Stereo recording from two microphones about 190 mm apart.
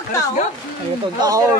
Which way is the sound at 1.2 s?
20° right (ahead or behind).